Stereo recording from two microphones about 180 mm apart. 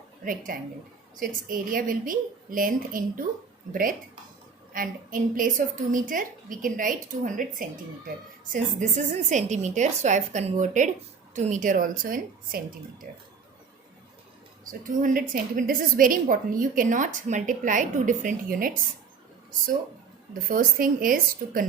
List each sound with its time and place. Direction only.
0.3 s a woman's voice: 50° right (ahead or behind)
8.8 s a woman's voice: 40° right (ahead or behind)
14.6 s a woman's voice: 45° right (ahead or behind)
20.5 s a woman's voice: 50° right (ahead or behind)